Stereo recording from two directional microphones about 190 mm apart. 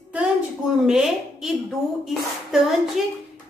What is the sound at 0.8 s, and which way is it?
A woman's voice, 5° right (ahead or behind).